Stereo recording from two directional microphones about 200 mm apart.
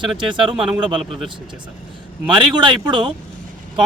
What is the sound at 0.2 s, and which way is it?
A man's voice, 25° right (ahead or behind).